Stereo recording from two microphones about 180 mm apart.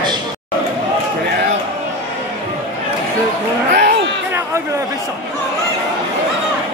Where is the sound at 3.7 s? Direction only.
75° right (ahead or behind).